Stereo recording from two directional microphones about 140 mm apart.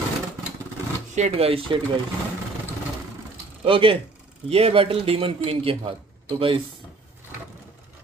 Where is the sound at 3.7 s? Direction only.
40° right (ahead or behind).